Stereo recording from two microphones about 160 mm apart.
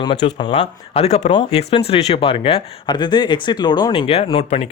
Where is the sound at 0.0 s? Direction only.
30° left (ahead or behind).